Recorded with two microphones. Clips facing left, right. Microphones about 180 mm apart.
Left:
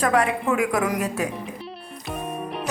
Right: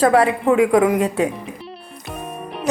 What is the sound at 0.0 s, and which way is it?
A woman's voice, 30° right (ahead or behind).